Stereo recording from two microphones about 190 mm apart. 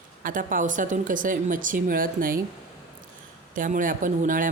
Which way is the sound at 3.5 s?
45° right (ahead or behind).